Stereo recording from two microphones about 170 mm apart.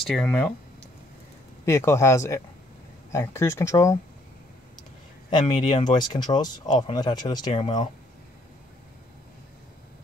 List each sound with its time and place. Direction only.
0.0 s speech: 5° left (ahead or behind)
1.7 s speech: 15° left (ahead or behind)
5.3 s speech: 25° left (ahead or behind)